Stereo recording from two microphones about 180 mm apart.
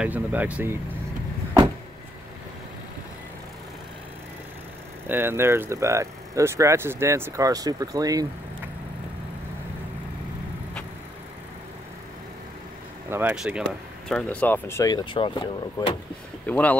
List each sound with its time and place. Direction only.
0.0 s speech: 10° right (ahead or behind)
5.0 s speech: 10° right (ahead or behind)
13.1 s speech: 10° right (ahead or behind)
14.0 s speech: 5° left (ahead or behind)
15.0 s speech: 30° left (ahead or behind)
16.4 s speech: 10° left (ahead or behind)